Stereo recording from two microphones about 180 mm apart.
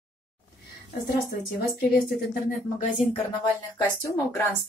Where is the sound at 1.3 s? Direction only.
60° left (ahead or behind).